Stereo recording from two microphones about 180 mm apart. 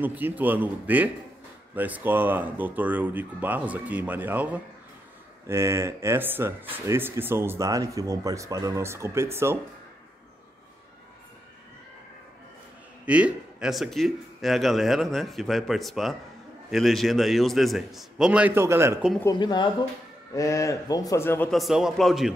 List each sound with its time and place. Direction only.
0.0 s speech: 10° right (ahead or behind)
13.0 s speech: 5° right (ahead or behind)
19.3 s a man's voice: 25° left (ahead or behind)
21.5 s speech: centre (ahead or behind)